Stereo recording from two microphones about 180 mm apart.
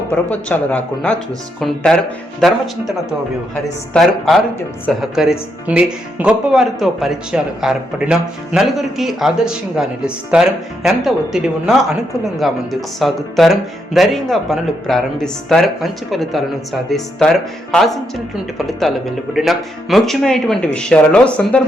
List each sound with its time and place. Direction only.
0.1 s speech: 10° left (ahead or behind)